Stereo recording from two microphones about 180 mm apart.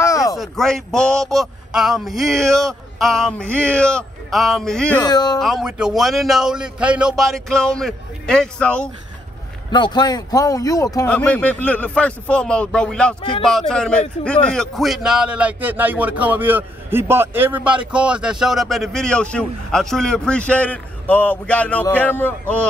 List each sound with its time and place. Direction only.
0.0 s a sound: 20° left (ahead or behind)
0.4 s a man's voice: centre (ahead or behind)
5.0 s speech: 20° left (ahead or behind)
5.4 s a man's voice: centre (ahead or behind)
9.7 s speech: 25° left (ahead or behind)
11.1 s a man's voice: 5° left (ahead or behind)